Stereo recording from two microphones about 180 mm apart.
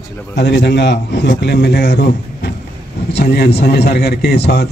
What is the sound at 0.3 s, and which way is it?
A man's voice, 75° left (ahead or behind).